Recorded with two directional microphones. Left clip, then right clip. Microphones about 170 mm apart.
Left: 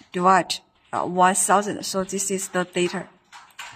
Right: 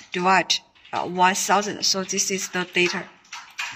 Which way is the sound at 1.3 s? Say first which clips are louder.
Left 1 dB; 35° left (ahead or behind).